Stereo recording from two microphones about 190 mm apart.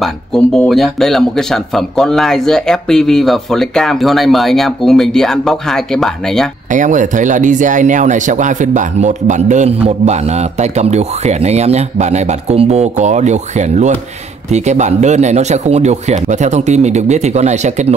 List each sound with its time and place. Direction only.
0.0 s speech: centre (ahead or behind)
6.7 s speech: 40° right (ahead or behind)